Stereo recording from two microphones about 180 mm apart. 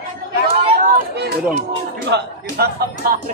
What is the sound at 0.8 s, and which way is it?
Speech, 65° right (ahead or behind).